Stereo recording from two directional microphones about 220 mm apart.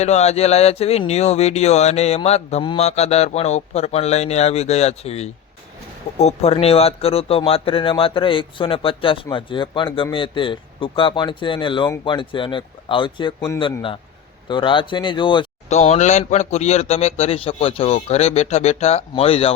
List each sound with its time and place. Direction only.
0.0 s speech: 30° left (ahead or behind)